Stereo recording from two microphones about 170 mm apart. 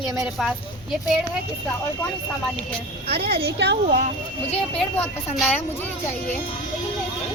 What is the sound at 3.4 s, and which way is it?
Speech, 80° right.